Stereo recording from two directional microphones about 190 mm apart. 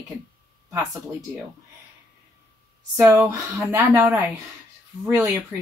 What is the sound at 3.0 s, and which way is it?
Speech, 15° right (ahead or behind).